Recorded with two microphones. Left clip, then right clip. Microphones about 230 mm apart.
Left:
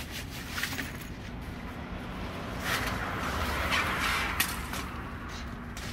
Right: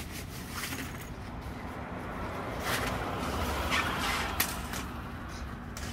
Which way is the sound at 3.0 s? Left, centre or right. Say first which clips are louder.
Left 1 dB; right.